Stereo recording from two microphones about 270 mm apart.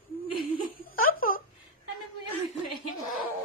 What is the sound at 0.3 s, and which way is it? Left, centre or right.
Laughter, centre.